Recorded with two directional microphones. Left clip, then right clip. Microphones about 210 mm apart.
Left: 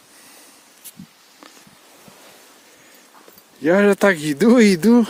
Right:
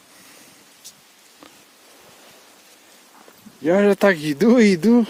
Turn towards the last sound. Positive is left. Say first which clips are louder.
# left 2 dB
turn(degrees=20)  # may be behind; listen again after turning